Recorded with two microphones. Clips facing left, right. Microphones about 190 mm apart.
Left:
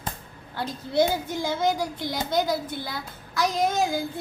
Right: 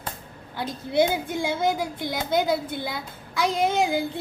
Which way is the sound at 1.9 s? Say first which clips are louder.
Right 1 dB; 55° right (ahead or behind).